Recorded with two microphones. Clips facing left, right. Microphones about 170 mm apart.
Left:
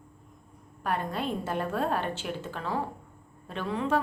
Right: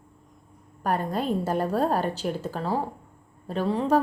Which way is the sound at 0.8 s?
40° right (ahead or behind).